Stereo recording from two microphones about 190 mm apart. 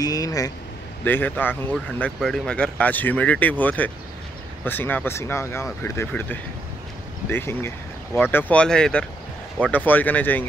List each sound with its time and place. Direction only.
0.0 s speech: 20° left (ahead or behind)